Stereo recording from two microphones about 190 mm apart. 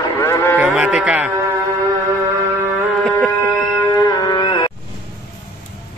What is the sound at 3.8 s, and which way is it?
Music, 15° left (ahead or behind).